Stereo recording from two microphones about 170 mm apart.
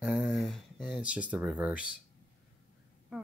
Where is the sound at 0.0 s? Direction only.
5° right (ahead or behind).